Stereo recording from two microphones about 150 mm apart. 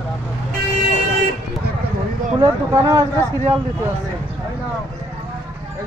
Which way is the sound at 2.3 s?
30° right (ahead or behind).